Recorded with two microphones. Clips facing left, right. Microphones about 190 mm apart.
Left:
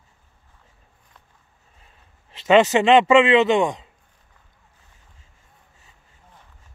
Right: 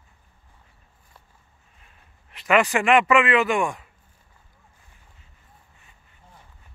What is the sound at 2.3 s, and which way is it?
Speech, 25° left (ahead or behind).